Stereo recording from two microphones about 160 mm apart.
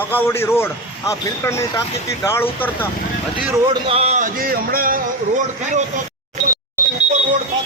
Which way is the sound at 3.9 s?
40° right (ahead or behind).